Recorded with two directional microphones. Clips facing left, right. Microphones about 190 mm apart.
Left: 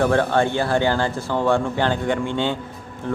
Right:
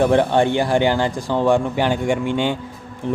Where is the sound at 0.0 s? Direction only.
20° right (ahead or behind).